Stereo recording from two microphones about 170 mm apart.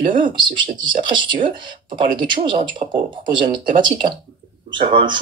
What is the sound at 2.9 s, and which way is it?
Speech, 25° right (ahead or behind).